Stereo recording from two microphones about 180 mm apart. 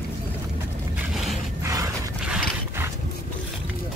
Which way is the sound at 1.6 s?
20° right (ahead or behind).